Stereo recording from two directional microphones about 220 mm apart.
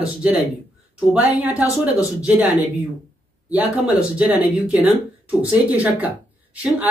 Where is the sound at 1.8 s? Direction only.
5° right (ahead or behind).